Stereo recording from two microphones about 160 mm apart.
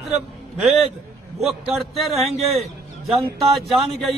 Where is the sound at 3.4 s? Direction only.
Centre (ahead or behind).